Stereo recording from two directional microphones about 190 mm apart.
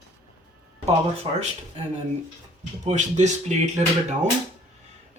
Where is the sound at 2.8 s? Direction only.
35° right (ahead or behind).